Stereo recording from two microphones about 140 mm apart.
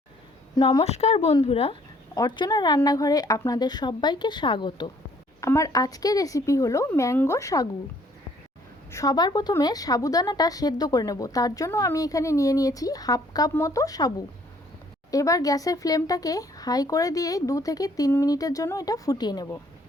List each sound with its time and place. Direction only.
0.5 s speech: 35° left (ahead or behind)
0.9 s speech: 50° left (ahead or behind)
2.1 s speech: 35° left (ahead or behind)
5.4 s a woman's voice: 20° left (ahead or behind)
8.9 s a woman's voice: 25° left (ahead or behind)